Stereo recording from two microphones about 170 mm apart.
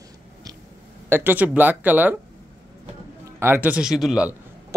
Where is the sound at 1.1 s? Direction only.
10° right (ahead or behind).